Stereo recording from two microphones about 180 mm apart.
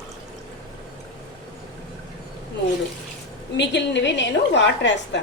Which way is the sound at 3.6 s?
75° left (ahead or behind).